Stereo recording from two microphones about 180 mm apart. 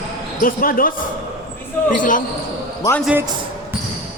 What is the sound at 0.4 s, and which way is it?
Speech, 50° left (ahead or behind).